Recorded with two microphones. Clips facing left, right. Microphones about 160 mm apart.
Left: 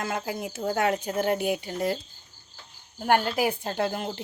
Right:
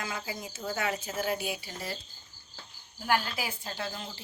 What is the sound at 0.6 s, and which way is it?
Speech, 55° left (ahead or behind).